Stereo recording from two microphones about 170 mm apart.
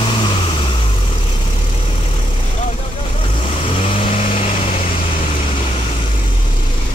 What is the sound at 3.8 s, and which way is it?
Vehicle, 35° left (ahead or behind).